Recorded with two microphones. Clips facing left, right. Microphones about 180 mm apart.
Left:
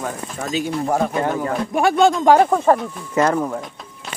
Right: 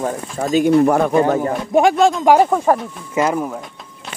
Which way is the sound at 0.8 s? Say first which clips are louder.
Right 6 dB; 65° right (ahead or behind).